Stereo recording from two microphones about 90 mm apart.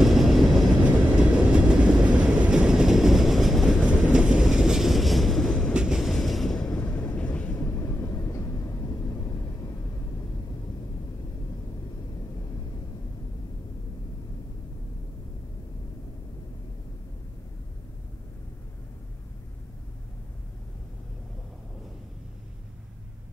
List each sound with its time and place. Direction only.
0.0 s train: centre (ahead or behind)
3.8 s vehicle: 10° right (ahead or behind)
5.7 s train: 10° right (ahead or behind)
6.8 s vehicle: 15° left (ahead or behind)
7.7 s vehicle: 30° left (ahead or behind)